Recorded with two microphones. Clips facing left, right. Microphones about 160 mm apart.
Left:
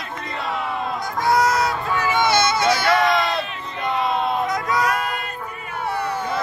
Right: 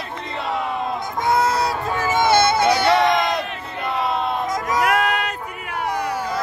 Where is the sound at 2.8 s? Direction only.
20° right (ahead or behind).